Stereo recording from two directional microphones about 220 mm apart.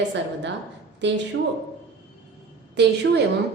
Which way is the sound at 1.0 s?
55° right (ahead or behind).